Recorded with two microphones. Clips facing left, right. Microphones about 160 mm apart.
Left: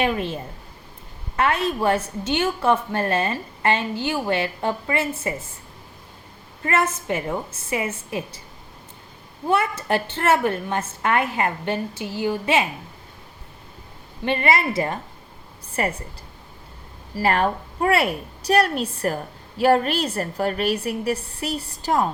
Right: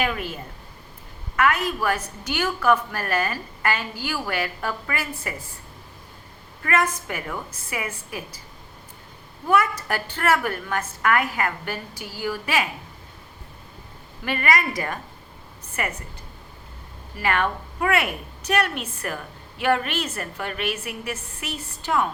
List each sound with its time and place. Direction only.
0.0 s a woman's voice: 30° left (ahead or behind)
1.4 s a woman's voice: 30° left (ahead or behind)
6.6 s a woman's voice: 25° left (ahead or behind)
9.5 s a woman's voice: 25° left (ahead or behind)
14.3 s a woman's voice: 25° left (ahead or behind)
17.2 s a woman's voice: 35° left (ahead or behind)